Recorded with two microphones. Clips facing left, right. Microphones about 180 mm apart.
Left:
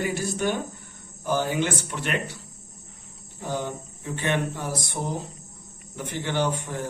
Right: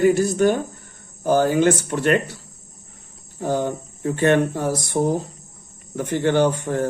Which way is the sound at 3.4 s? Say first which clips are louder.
Right 8 dB; 50° right (ahead or behind).